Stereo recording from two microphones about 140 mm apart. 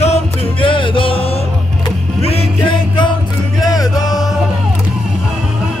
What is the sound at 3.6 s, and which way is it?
Music, 25° left (ahead or behind).